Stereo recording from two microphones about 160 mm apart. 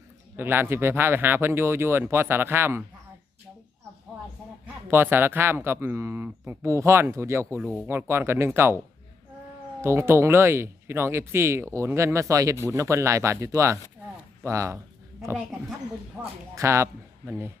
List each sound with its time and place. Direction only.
0.3 s speech: 15° right (ahead or behind)
4.6 s speech: 15° right (ahead or behind)
9.8 s speech: 15° right (ahead or behind)
16.6 s a man's voice: 15° right (ahead or behind)